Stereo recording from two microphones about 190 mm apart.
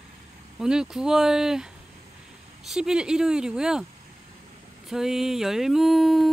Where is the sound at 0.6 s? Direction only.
5° right (ahead or behind).